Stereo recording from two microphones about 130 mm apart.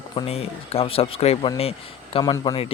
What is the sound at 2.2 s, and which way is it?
Speech, 30° left (ahead or behind).